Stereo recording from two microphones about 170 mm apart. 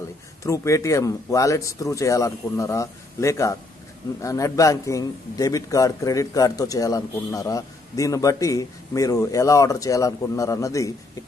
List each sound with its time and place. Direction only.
0.4 s a man's voice: 20° left (ahead or behind)